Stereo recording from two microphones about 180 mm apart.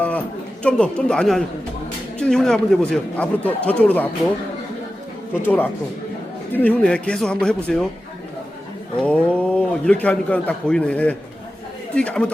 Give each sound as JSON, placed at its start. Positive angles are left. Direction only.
{"t": 0.6, "sound": "a man's voice", "side_deg": 5}
{"t": 5.4, "sound": "a man's voice", "side_deg": 10}
{"t": 9.0, "sound": "a man's voice", "side_deg": 5}